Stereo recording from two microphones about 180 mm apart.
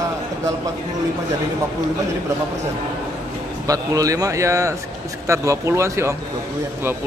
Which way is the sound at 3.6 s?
20° right (ahead or behind).